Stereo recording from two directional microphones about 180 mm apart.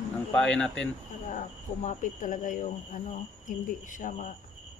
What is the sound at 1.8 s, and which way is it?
Speech, 45° left (ahead or behind).